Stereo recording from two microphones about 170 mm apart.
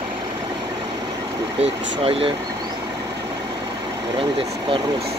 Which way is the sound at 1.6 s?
35° right (ahead or behind).